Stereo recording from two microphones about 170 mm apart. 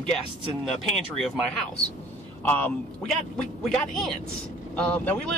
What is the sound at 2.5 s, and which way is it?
A man's voice, 10° left (ahead or behind).